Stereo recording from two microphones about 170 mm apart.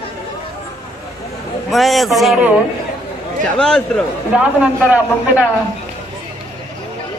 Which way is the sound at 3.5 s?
5° left (ahead or behind).